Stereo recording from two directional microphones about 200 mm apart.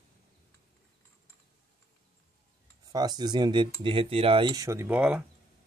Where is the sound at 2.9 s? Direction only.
20° right (ahead or behind).